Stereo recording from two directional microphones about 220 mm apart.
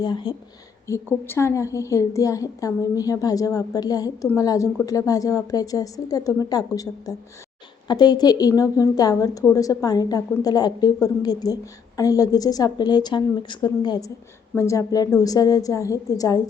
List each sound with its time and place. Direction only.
0.0 s a woman's voice: 20° left (ahead or behind)